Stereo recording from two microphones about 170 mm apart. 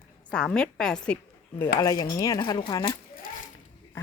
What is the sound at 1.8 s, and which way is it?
Speech, 20° left (ahead or behind).